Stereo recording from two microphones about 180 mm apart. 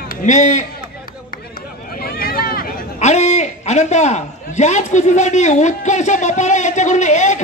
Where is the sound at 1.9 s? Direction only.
55° left (ahead or behind).